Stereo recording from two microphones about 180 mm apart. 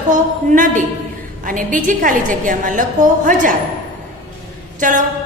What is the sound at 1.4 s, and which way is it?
A woman's voice, 45° right (ahead or behind).